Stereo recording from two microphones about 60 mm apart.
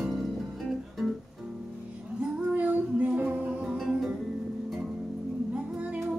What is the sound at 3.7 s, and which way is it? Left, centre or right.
Music, centre.